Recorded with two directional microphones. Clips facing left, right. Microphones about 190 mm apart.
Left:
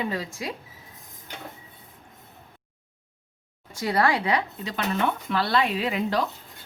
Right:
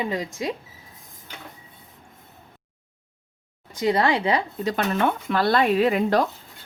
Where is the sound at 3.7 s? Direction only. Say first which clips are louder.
Right 3 dB; 20° right (ahead or behind).